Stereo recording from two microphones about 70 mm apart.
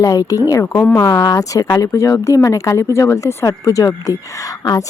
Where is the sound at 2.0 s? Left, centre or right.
Left.